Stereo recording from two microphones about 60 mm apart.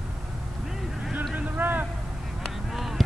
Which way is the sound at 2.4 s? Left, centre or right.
Centre.